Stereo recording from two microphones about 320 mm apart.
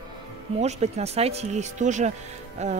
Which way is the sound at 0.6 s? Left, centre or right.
Right.